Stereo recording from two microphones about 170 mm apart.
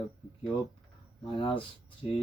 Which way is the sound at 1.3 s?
30° left (ahead or behind).